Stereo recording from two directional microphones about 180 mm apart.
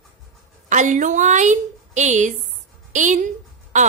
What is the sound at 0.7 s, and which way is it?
A woman's voice, 45° right (ahead or behind).